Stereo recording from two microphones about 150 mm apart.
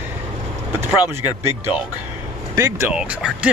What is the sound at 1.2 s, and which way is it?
Speech, 15° right (ahead or behind).